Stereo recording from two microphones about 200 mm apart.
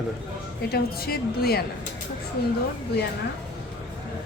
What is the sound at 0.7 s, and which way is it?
Speech, 50° left (ahead or behind).